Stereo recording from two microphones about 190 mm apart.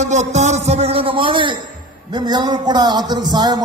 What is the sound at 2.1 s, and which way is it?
A man's voice, 20° right (ahead or behind).